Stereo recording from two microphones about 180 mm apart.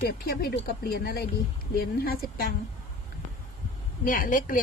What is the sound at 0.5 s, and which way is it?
Speech, 55° left (ahead or behind).